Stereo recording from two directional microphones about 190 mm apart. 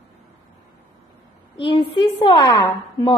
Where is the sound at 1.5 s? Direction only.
25° left (ahead or behind).